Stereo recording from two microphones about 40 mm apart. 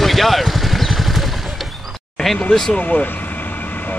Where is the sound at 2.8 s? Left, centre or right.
Left.